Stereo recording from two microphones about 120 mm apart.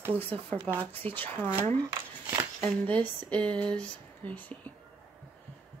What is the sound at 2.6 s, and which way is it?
Speech, 10° left (ahead or behind).